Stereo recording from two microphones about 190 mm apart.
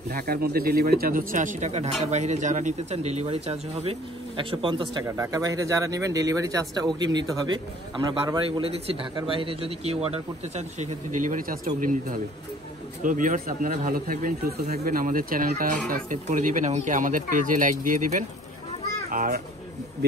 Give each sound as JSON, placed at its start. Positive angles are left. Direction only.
{"t": 0.1, "sound": "a man's voice", "side_deg": -50}